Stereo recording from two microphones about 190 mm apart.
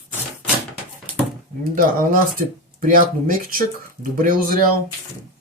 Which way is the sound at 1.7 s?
50° right (ahead or behind).